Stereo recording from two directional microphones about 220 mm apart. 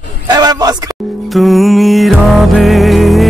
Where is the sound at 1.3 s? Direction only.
Centre (ahead or behind).